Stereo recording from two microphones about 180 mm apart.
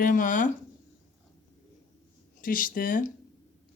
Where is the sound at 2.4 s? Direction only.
50° left (ahead or behind).